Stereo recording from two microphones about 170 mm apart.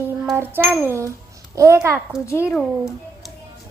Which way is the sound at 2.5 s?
Centre (ahead or behind).